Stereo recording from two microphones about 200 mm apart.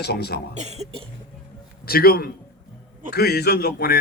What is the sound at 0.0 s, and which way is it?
Speech, 55° left (ahead or behind).